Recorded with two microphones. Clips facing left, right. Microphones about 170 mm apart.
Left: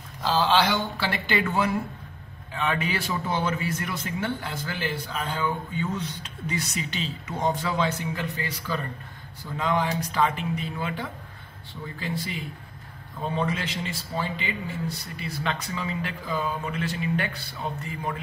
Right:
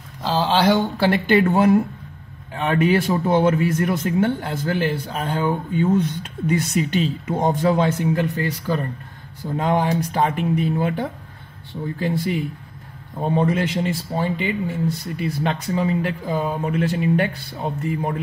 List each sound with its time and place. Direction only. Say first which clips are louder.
0.2 s a man's voice: right 3 dB; 30° right (ahead or behind); by 18.1 s 50° right (ahead or behind)